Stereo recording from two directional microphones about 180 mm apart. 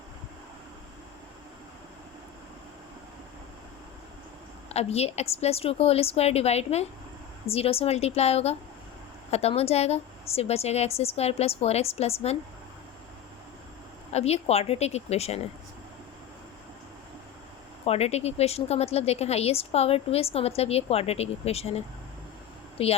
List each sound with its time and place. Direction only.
4.7 s a woman's voice: 35° left (ahead or behind)
14.1 s a woman's voice: 35° left (ahead or behind)
17.8 s a woman's voice: 35° left (ahead or behind)